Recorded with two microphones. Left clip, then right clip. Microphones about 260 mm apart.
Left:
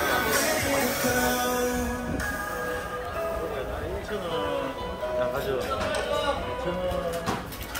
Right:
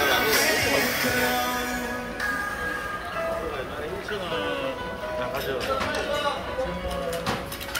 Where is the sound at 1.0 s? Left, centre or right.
Left.